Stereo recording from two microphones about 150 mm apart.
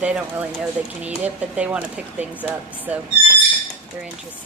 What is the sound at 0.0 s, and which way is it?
Speech, 10° right (ahead or behind).